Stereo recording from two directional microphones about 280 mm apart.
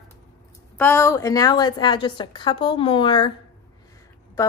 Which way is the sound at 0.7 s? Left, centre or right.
Centre.